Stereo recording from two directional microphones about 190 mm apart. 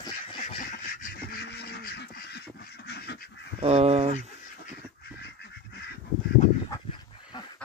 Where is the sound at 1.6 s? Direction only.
60° left (ahead or behind).